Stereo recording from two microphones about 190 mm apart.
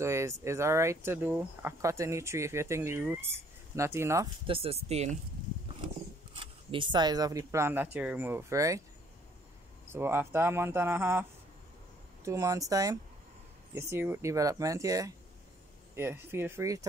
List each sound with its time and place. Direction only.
0.0 s speech: 15° right (ahead or behind)
4.5 s speech: 30° right (ahead or behind)
6.3 s speech: 25° right (ahead or behind)
9.9 s speech: 10° right (ahead or behind)
12.3 s speech: 15° right (ahead or behind)